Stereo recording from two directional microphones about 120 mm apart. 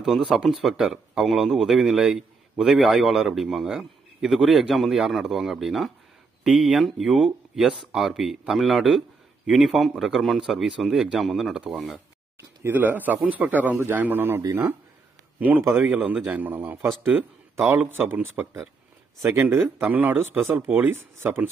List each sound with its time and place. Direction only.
0.0 s speech: 5° right (ahead or behind)